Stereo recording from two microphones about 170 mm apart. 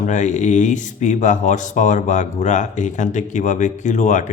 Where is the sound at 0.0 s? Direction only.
45° left (ahead or behind).